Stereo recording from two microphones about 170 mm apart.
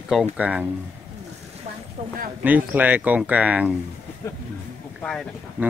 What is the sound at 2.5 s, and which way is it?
Speech, 10° right (ahead or behind).